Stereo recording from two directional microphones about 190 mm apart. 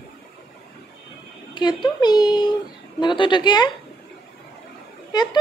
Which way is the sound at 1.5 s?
25° left (ahead or behind).